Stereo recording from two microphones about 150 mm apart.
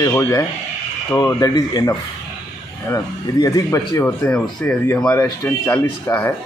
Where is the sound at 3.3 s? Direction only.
25° left (ahead or behind).